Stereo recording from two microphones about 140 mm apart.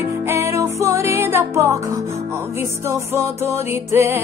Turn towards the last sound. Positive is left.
turn(degrees=-20)  # may be behind; listen again after turning